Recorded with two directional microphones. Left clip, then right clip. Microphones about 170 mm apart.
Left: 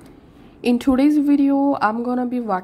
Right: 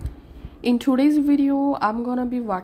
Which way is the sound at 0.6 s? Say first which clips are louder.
Left 2 dB; 15° left (ahead or behind).